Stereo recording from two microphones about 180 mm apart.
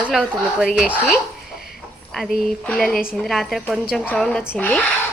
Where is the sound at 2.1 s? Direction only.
Centre (ahead or behind).